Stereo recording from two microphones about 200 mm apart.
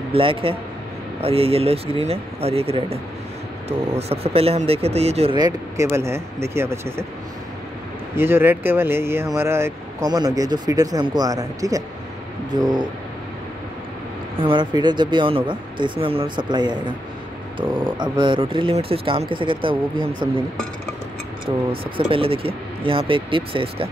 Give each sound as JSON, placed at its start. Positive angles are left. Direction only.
{"t": 0.1, "sound": "speech", "side_deg": -25}
{"t": 8.2, "sound": "speech", "side_deg": -10}
{"t": 14.4, "sound": "speech", "side_deg": -25}
{"t": 21.5, "sound": "speech", "side_deg": -25}